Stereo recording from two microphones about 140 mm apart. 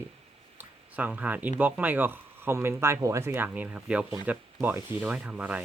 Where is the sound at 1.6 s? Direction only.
10° right (ahead or behind).